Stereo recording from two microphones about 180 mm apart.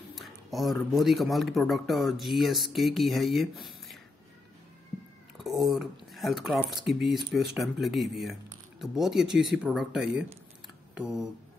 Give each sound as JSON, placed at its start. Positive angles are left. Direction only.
{"t": 0.1, "sound": "speech", "side_deg": 0}
{"t": 5.4, "sound": "speech", "side_deg": 0}